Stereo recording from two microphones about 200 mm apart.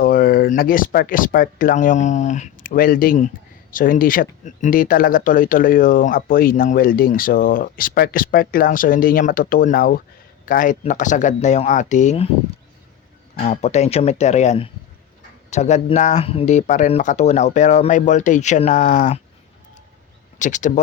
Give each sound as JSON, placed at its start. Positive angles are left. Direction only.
{"t": 0.0, "sound": "speech", "side_deg": 50}
{"t": 13.4, "sound": "speech", "side_deg": 35}
{"t": 20.4, "sound": "speech", "side_deg": 40}